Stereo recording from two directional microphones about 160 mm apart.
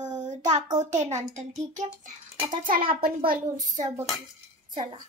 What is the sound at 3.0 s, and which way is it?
Speech, 65° right (ahead or behind).